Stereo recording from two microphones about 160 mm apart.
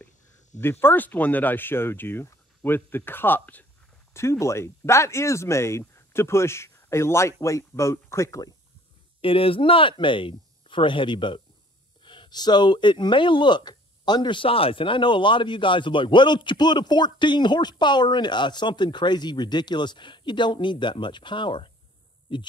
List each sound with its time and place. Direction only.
0.6 s speech: 15° left (ahead or behind)
9.2 s speech: 35° left (ahead or behind)